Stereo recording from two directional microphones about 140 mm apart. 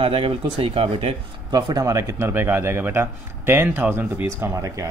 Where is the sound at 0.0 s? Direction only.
40° right (ahead or behind).